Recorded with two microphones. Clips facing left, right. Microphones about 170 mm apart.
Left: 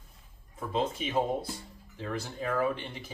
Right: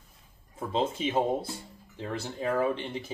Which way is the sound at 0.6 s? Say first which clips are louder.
Right 2 dB; 25° right (ahead or behind).